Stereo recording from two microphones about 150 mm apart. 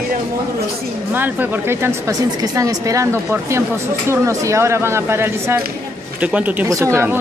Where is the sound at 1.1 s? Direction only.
10° right (ahead or behind).